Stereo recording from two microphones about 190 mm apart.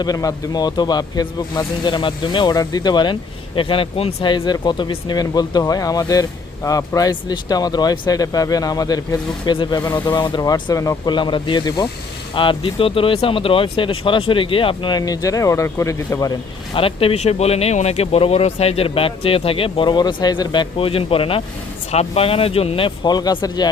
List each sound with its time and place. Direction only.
0.0 s speech: 20° left (ahead or behind)
16.7 s speech: 30° left (ahead or behind)